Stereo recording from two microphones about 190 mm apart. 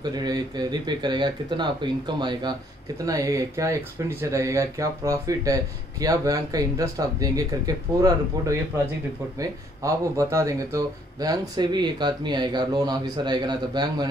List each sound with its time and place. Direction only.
0.0 s speech: 20° right (ahead or behind)